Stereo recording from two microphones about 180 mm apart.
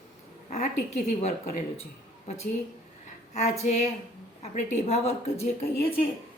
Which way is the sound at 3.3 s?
40° left (ahead or behind).